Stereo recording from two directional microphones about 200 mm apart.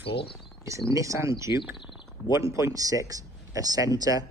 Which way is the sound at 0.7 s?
15° right (ahead or behind).